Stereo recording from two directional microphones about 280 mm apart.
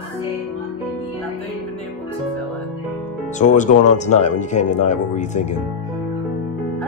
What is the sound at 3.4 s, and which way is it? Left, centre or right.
Speech, left.